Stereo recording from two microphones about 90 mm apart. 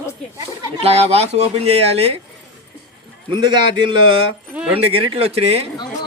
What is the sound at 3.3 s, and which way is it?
Speech, 55° right (ahead or behind).